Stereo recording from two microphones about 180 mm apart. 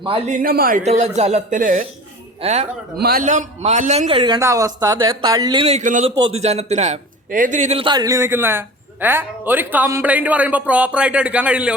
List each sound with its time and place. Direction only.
0.3 s speech: 50° right (ahead or behind)
0.8 s speech: 40° right (ahead or behind)
2.4 s speech: 35° right (ahead or behind)
3.0 s a man's voice: 60° right (ahead or behind)
3.2 s speech: 40° right (ahead or behind)
4.4 s speech: 15° right (ahead or behind)
5.6 s speech: 40° right (ahead or behind)
6.1 s a man's voice: 25° right (ahead or behind); by 11.7 s 5° right (ahead or behind)